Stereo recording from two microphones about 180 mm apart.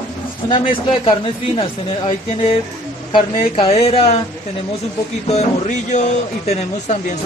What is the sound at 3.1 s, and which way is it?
Speech, 30° left (ahead or behind).